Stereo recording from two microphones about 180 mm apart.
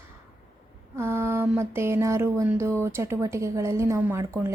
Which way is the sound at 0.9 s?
15° right (ahead or behind).